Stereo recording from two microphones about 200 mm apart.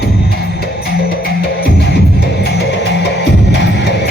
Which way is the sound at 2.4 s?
55° left (ahead or behind).